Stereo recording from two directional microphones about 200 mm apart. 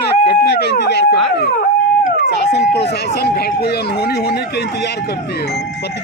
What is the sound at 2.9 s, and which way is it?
Speech, 55° left (ahead or behind).